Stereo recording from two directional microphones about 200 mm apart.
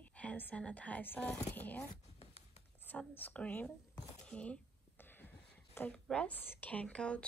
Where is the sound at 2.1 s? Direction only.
30° left (ahead or behind).